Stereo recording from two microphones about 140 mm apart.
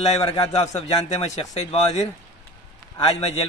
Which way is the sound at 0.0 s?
45° left (ahead or behind).